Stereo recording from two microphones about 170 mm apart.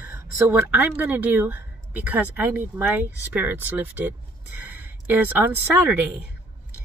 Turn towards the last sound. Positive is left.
turn(degrees=-10)  # may be behind; listen again after turning